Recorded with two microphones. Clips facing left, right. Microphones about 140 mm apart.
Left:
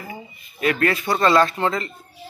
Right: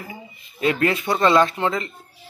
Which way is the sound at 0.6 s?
20° right (ahead or behind).